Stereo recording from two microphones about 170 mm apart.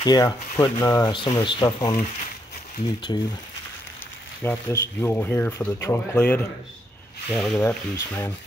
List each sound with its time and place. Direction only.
0.0 s speech: 20° left (ahead or behind)
3.1 s speech: 25° left (ahead or behind)
4.4 s speech: 15° left (ahead or behind)